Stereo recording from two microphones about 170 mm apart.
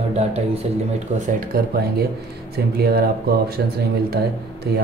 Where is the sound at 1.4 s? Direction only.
60° right (ahead or behind).